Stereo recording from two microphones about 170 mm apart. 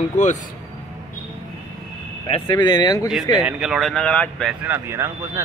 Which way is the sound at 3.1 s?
5° right (ahead or behind).